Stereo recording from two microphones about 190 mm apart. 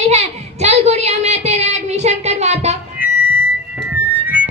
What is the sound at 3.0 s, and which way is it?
Music, 10° right (ahead or behind).